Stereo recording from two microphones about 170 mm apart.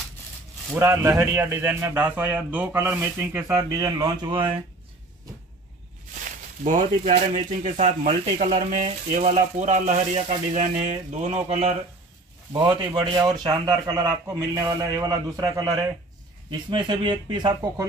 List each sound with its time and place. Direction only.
0.7 s a man's voice: 15° right (ahead or behind)
6.6 s speech: 45° right (ahead or behind)
13.2 s a man's voice: 20° right (ahead or behind)